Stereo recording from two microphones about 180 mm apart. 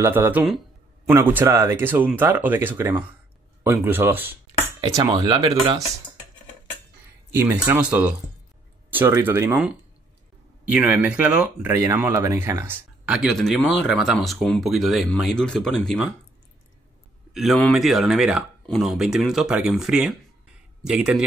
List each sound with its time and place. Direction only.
0.0 s speech: 10° right (ahead or behind)
7.3 s speech: 10° right (ahead or behind)
17.3 s speech: centre (ahead or behind)